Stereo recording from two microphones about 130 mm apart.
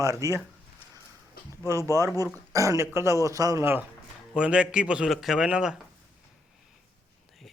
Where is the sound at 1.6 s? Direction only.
25° right (ahead or behind).